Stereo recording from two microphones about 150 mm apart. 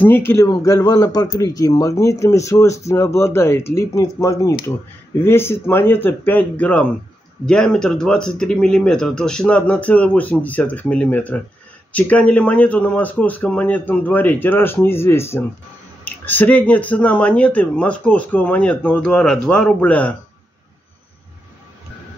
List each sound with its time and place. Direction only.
0.0 s speech: 15° left (ahead or behind)